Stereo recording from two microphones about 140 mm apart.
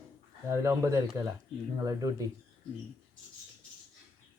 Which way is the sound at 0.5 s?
20° right (ahead or behind).